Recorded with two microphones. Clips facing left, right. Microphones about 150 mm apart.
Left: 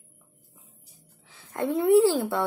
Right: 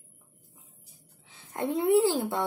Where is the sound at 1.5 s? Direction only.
20° right (ahead or behind).